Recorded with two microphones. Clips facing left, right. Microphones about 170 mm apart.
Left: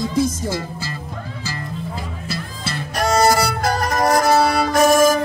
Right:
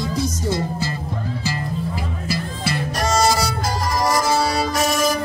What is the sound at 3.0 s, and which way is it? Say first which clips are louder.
Music: left 4 dB; 60° left (ahead or behind).